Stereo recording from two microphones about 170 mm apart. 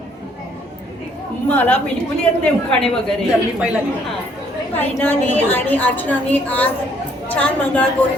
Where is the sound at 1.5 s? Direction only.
10° left (ahead or behind).